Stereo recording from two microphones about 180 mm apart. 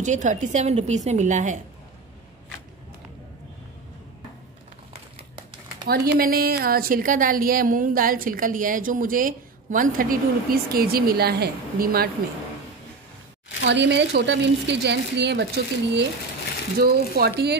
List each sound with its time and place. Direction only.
0.0 s a woman's voice: 45° right (ahead or behind)
4.9 s crumpling: 30° right (ahead or behind)
5.9 s a woman's voice: 55° right (ahead or behind)
13.7 s speech: 75° right (ahead or behind)